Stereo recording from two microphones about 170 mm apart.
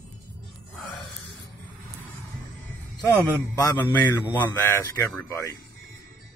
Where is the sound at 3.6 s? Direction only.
15° left (ahead or behind).